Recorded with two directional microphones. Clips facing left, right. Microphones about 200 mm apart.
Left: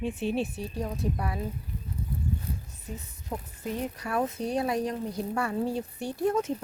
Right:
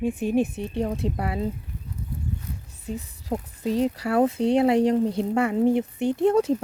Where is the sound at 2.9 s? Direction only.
30° right (ahead or behind).